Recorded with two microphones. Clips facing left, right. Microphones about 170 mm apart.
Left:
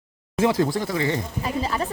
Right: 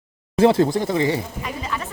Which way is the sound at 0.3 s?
30° right (ahead or behind).